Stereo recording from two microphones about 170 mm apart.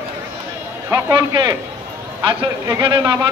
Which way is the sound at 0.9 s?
20° right (ahead or behind).